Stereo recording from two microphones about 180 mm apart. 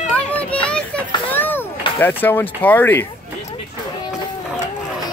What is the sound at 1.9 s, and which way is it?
Speech, 10° left (ahead or behind).